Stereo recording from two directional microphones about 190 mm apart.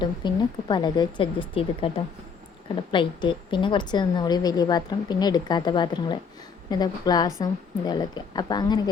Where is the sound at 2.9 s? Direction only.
25° left (ahead or behind).